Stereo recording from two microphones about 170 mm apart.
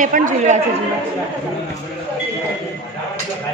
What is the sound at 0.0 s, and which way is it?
Speech, 50° right (ahead or behind).